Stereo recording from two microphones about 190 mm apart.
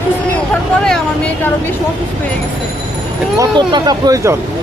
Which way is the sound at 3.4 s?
20° right (ahead or behind).